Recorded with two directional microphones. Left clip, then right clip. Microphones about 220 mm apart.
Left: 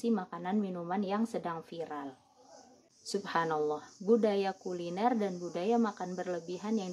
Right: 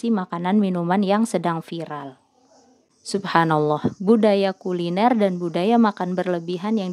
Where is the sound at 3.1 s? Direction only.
40° right (ahead or behind).